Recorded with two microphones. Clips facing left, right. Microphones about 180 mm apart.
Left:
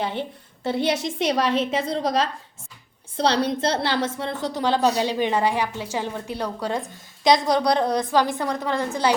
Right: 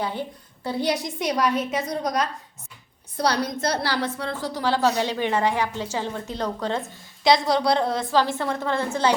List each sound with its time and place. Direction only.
0.0 s a woman's voice: 25° left (ahead or behind)